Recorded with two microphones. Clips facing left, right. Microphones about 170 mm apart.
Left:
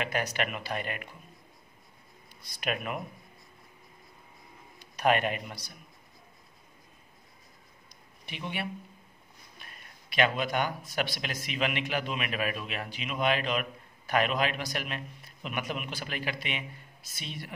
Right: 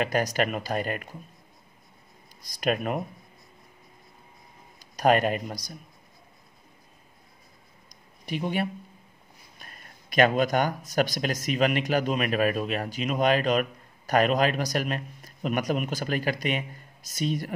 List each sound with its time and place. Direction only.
0.0 s speech: 40° right (ahead or behind)
2.4 s speech: 40° right (ahead or behind)
4.7 s a man's voice: 40° right (ahead or behind)
7.9 s a sound: 40° right (ahead or behind)
9.6 s speech: 45° right (ahead or behind)